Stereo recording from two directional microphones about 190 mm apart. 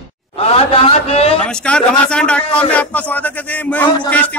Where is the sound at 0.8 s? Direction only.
30° left (ahead or behind).